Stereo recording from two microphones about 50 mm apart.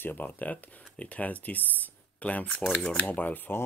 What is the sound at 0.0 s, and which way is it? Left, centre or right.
Speech, left.